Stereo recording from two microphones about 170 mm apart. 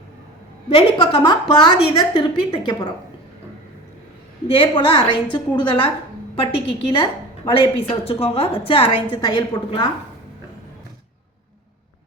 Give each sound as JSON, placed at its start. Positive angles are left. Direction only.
{"t": 0.7, "sound": "a woman's voice", "side_deg": 30}
{"t": 4.5, "sound": "a woman's voice", "side_deg": 30}